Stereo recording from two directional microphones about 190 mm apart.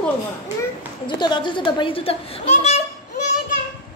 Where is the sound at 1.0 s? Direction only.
25° left (ahead or behind).